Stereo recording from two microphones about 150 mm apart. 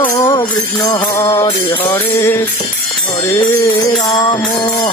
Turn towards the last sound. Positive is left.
turn(degrees=25)  # may be behind; listen again after turning